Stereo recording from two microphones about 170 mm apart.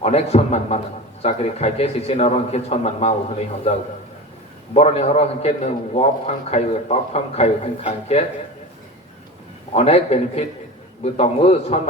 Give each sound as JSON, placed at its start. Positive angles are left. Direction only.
{"t": 0.0, "sound": "a man's voice", "side_deg": 40}
{"t": 9.7, "sound": "a man's voice", "side_deg": 35}